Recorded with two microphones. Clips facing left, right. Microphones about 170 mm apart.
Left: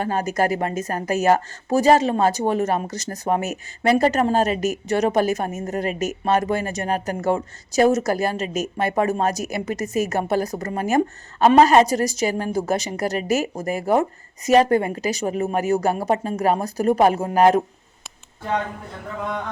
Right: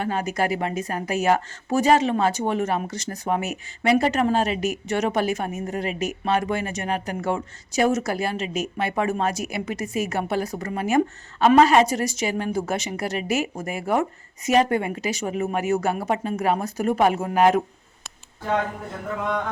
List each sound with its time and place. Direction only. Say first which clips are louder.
0.0 s speech: left 3 dB; 40° left (ahead or behind)